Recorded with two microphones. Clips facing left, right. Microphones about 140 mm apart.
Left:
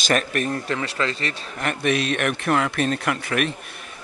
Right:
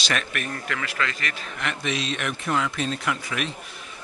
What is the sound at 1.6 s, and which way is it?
Speech, 55° left (ahead or behind).